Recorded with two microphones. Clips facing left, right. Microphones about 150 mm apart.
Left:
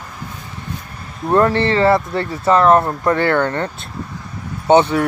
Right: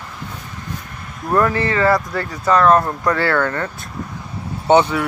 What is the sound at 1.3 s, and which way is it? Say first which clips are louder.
Speech: left 3 dB; 30° left (ahead or behind).